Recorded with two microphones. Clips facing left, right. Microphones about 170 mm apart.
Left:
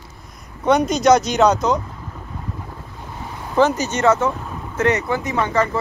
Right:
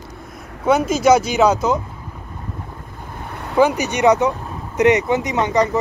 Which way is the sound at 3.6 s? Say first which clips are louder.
Right 1 dB; 10° right (ahead or behind).